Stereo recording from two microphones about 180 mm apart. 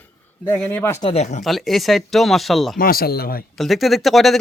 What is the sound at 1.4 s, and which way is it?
Speech, centre (ahead or behind).